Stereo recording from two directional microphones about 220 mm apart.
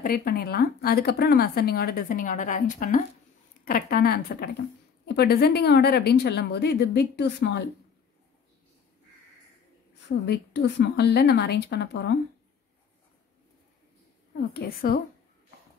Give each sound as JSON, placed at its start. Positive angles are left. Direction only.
{"t": 0.0, "sound": "speech", "side_deg": 40}
{"t": 10.0, "sound": "speech", "side_deg": 50}
{"t": 14.5, "sound": "speech", "side_deg": 45}